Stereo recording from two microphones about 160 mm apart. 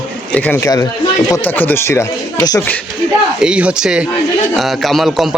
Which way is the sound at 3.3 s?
5° right (ahead or behind).